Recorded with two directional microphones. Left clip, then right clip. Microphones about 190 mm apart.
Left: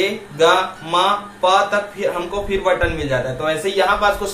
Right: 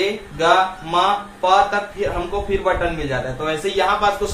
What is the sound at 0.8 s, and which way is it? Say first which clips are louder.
Speech: left 1 dB; 25° left (ahead or behind).